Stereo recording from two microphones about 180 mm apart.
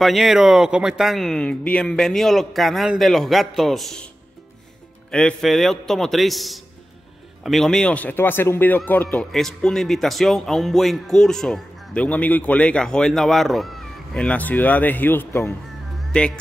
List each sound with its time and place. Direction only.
0.0 s a man's voice: centre (ahead or behind)
5.1 s a man's voice: centre (ahead or behind)